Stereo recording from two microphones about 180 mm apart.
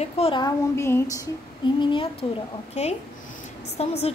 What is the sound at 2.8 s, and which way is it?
Speech, 40° left (ahead or behind).